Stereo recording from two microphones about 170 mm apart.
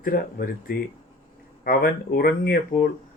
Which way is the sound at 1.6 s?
60° left (ahead or behind).